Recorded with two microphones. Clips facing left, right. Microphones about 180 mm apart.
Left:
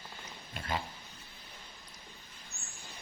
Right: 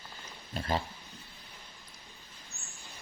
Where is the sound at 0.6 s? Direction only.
35° right (ahead or behind).